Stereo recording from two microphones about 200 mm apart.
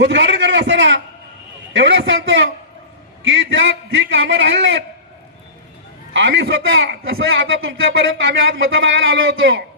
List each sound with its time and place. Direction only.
0.0 s a man's voice: 65° right (ahead or behind)
6.1 s a man's voice: 60° right (ahead or behind)
7.3 s speech: 75° right (ahead or behind)